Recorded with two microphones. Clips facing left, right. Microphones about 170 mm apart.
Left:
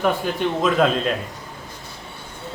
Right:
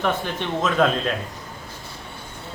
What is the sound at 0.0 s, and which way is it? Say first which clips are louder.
Speech: left 4 dB; 10° left (ahead or behind).